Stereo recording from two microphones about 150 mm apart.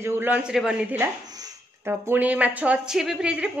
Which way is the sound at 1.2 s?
25° right (ahead or behind).